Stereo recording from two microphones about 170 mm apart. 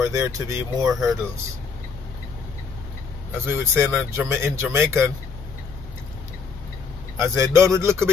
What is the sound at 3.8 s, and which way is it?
Speech, centre (ahead or behind).